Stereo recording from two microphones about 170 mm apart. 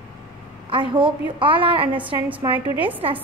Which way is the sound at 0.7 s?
30° right (ahead or behind).